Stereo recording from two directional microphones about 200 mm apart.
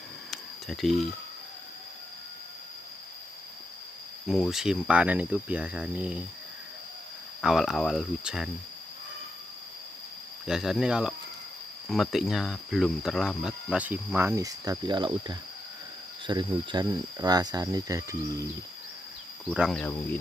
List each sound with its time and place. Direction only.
0.3 s a sound: centre (ahead or behind)
4.3 s cricket: centre (ahead or behind)
7.4 s cricket: centre (ahead or behind)
10.4 s cricket: 5° right (ahead or behind); by 15.3 s 20° right (ahead or behind)
16.3 s speech: 20° right (ahead or behind)
19.5 s cricket: 5° right (ahead or behind)
19.8 s speech: 5° left (ahead or behind)